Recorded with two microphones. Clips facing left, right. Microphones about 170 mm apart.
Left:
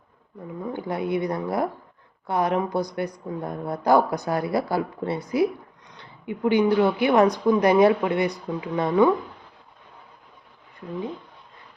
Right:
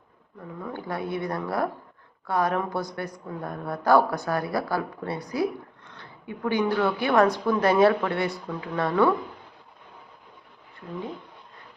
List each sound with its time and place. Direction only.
0.7 s a woman's voice: 20° left (ahead or behind)